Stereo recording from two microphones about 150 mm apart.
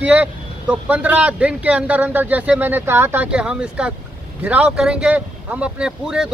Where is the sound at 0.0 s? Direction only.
10° right (ahead or behind).